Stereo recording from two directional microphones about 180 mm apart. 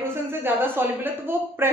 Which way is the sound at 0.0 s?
10° right (ahead or behind).